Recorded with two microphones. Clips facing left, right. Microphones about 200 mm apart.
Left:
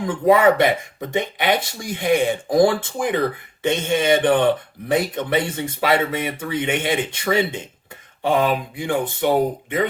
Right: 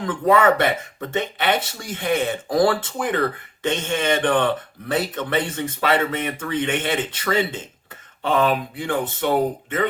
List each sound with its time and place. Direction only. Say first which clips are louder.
0.0 s speech: left 2 dB; 10° left (ahead or behind)